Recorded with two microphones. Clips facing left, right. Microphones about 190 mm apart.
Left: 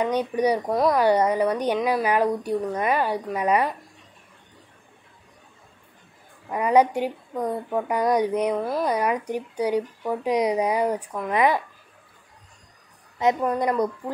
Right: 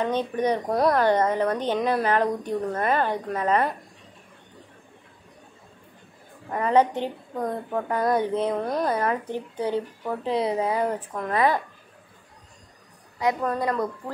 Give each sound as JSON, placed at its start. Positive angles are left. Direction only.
{"t": 0.0, "sound": "speech", "side_deg": 10}
{"t": 0.7, "sound": "speech", "side_deg": 0}
{"t": 1.0, "sound": "speech", "side_deg": 10}
{"t": 1.8, "sound": "speech", "side_deg": 0}
{"t": 6.5, "sound": "speech", "side_deg": 10}
{"t": 8.5, "sound": "speech", "side_deg": 5}
{"t": 8.8, "sound": "speech", "side_deg": 15}
{"t": 13.2, "sound": "speech", "side_deg": 20}